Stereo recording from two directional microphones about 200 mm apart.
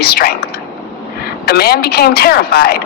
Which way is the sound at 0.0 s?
50° left (ahead or behind).